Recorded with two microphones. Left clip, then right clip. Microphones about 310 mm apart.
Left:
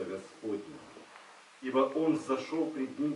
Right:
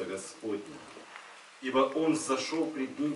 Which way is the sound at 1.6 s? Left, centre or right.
Centre.